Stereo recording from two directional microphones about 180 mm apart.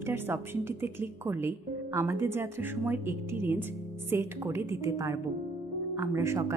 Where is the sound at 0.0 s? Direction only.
15° right (ahead or behind).